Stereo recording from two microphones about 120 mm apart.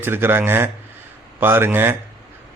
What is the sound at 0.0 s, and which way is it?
A man's voice, 20° right (ahead or behind).